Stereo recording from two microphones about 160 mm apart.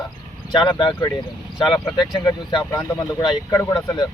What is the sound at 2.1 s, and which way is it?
Speech, 25° left (ahead or behind).